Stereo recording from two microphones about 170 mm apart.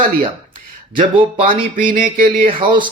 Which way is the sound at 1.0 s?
30° right (ahead or behind).